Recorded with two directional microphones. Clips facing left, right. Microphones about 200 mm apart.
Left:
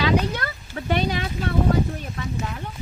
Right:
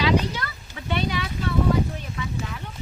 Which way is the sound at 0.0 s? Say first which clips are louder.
Left 1 dB; 50° left (ahead or behind).